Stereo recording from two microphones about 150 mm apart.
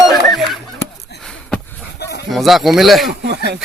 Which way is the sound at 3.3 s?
90° right.